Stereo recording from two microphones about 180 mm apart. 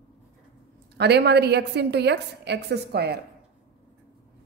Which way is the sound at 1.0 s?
70° right (ahead or behind).